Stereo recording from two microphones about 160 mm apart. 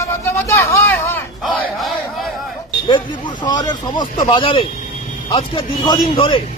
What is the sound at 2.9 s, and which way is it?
Speech, 30° left (ahead or behind).